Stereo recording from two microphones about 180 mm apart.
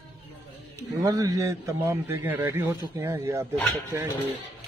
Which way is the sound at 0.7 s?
20° right (ahead or behind).